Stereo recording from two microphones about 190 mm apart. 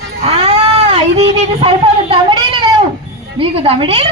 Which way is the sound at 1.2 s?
30° right (ahead or behind).